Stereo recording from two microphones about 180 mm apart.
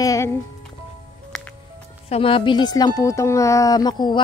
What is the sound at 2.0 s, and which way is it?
Speech, 30° left (ahead or behind).